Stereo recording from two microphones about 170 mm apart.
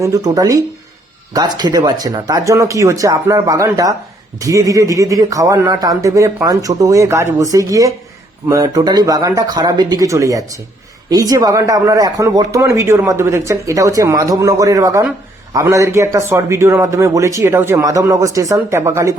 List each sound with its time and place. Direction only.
0.0 s a man's voice: 20° right (ahead or behind)